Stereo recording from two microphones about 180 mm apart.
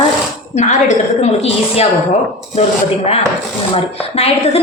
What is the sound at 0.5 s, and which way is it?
Speech, 40° left (ahead or behind).